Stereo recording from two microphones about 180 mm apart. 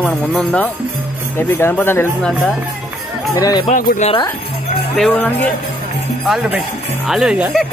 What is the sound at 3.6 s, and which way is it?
Speech, 45° left (ahead or behind).